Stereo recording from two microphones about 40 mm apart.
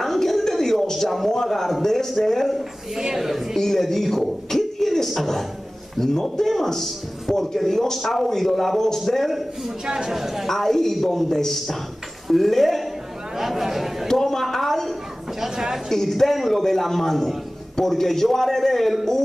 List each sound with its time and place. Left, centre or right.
0.0 s a sound: centre
3.2 s a woman's voice: centre
3.5 s a man's voice: centre
9.8 s a woman's voice: centre
10.1 s a man's voice: centre
10.4 s a man's voice: centre
14.0 s a sound: centre
15.4 s a woman's voice: centre
15.9 s a man's voice: centre